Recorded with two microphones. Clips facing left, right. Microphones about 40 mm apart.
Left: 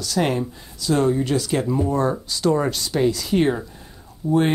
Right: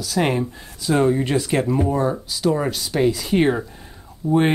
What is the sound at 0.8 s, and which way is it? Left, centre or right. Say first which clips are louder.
Speech: right 1 dB; right.